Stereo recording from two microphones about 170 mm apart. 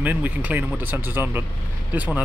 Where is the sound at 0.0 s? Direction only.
10° right (ahead or behind).